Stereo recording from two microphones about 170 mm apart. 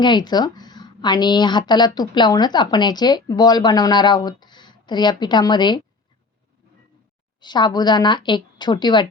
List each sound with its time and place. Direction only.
0.0 s a woman's voice: 25° left (ahead or behind)
7.3 s a woman's voice: 25° left (ahead or behind)